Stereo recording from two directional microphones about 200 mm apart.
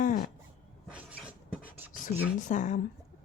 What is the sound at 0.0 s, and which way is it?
Dog, 40° left (ahead or behind).